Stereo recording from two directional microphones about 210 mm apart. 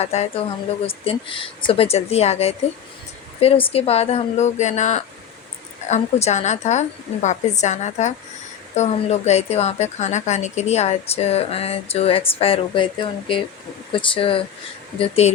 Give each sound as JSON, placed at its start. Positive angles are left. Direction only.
{"t": 0.0, "sound": "a woman's voice", "side_deg": 30}